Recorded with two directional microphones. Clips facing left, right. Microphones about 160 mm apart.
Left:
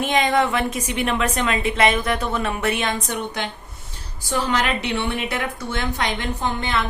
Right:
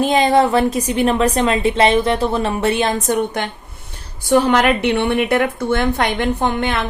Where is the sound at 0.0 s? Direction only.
35° right (ahead or behind).